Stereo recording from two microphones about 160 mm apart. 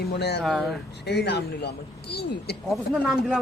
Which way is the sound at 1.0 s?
90° left.